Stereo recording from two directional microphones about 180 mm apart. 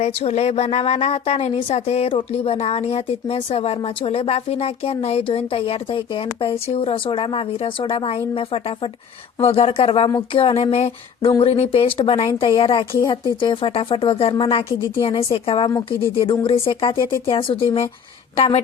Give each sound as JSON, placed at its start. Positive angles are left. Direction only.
{"t": 0.0, "sound": "a woman's voice", "side_deg": 35}